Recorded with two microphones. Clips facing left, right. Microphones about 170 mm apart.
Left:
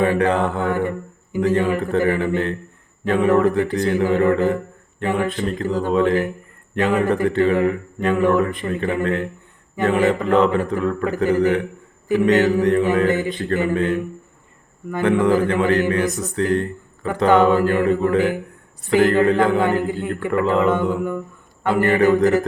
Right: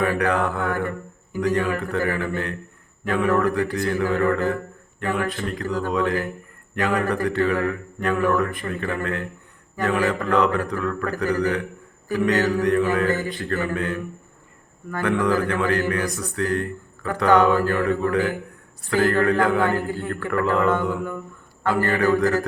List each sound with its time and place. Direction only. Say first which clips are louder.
0.0 s a man's voice: left 4 dB; 25° left (ahead or behind)